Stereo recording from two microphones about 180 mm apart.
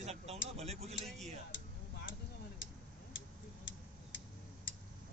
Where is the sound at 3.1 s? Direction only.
90° left.